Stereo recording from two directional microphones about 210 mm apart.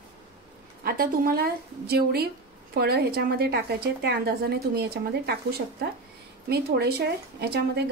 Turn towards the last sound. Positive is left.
turn(degrees=-50)  # may be behind; listen again after turning